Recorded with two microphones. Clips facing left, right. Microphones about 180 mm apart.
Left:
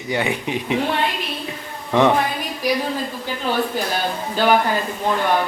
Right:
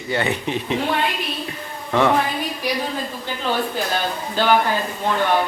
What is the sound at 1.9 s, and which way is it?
Speech, 15° left (ahead or behind).